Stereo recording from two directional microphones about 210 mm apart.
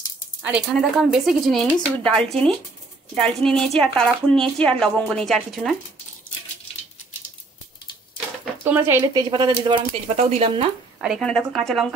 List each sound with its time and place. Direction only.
0.4 s speech: 5° right (ahead or behind)
8.6 s speech: 10° right (ahead or behind); by 10.7 s 30° right (ahead or behind)
11.0 s speech: centre (ahead or behind)